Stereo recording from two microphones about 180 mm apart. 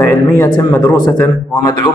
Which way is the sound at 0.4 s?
20° left (ahead or behind).